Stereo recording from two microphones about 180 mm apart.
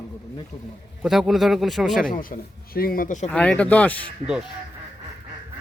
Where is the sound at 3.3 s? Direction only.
5° left (ahead or behind).